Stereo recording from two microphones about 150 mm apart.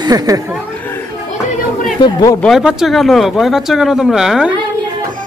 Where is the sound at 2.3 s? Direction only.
Centre (ahead or behind).